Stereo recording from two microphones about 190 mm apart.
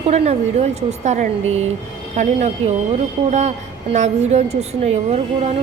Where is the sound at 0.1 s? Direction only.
35° right (ahead or behind).